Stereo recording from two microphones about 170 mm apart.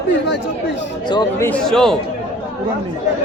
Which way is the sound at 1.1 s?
25° left (ahead or behind).